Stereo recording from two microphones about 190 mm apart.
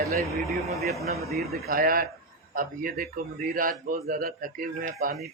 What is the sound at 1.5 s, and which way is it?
Speech, 50° right (ahead or behind).